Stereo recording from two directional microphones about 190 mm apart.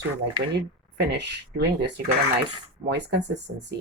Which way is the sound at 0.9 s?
65° right (ahead or behind).